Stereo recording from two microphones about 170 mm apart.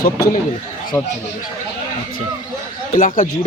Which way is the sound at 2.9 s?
55° left (ahead or behind).